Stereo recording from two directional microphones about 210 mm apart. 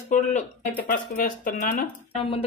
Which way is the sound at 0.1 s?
35° left (ahead or behind).